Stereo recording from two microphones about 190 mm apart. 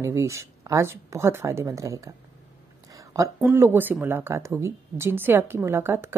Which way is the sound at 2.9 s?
15° right (ahead or behind).